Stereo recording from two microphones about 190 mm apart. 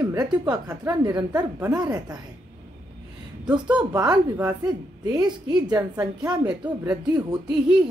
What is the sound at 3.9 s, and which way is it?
A woman's voice, 20° right (ahead or behind).